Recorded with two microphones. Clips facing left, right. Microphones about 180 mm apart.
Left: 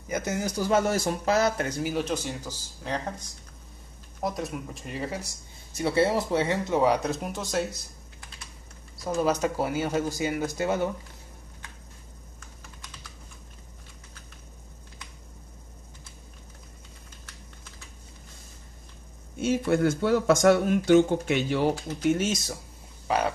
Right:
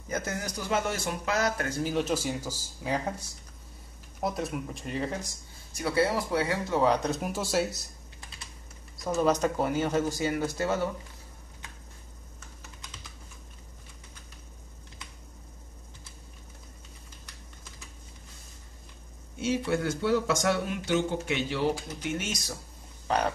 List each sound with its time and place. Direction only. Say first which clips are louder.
0.1 s speech: left 4 dB; 20° left (ahead or behind)
1.7 s speech: even; 10° left (ahead or behind)
5.8 s speech: left 3 dB; 25° left (ahead or behind); by 7.9 s centre (ahead or behind)
9.0 s speech: even; 5° left (ahead or behind)
19.4 s speech: left 5 dB; 50° left (ahead or behind)
23.0 s speech: left 2 dB; 5° left (ahead or behind)